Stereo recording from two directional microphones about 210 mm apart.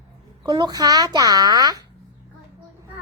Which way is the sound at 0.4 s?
20° right (ahead or behind).